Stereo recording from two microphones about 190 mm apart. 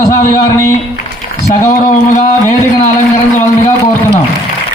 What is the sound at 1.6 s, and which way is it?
Speech, 40° left (ahead or behind).